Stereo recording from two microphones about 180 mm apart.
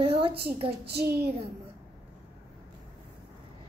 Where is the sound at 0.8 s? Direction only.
60° right (ahead or behind).